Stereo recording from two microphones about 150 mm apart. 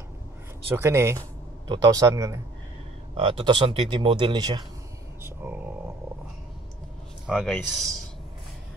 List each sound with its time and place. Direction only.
0.7 s speech: 20° right (ahead or behind)
3.2 s speech: 35° right (ahead or behind)
5.2 s a sound: 10° right (ahead or behind)
7.2 s speech: 5° left (ahead or behind)